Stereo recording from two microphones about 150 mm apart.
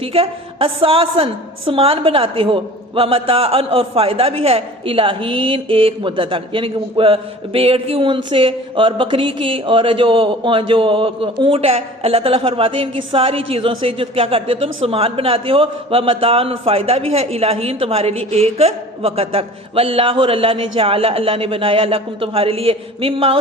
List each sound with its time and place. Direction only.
0.0 s a woman's voice: 40° right (ahead or behind)